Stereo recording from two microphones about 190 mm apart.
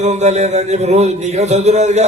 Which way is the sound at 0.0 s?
35° right (ahead or behind).